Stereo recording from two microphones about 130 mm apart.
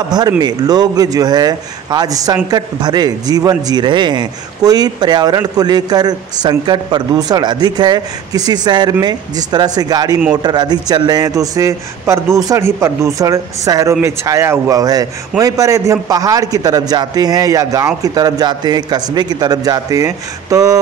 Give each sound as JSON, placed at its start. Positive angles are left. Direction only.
{"t": 0.4, "sound": "a man's voice", "side_deg": -30}